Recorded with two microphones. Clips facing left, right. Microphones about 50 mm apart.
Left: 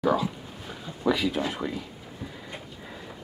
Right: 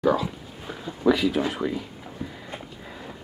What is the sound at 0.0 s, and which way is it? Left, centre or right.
Speech, centre.